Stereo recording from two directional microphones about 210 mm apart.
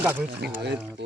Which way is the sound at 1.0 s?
55° right (ahead or behind).